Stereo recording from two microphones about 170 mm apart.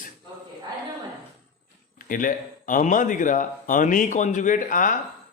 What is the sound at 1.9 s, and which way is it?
A man's voice, 55° left (ahead or behind).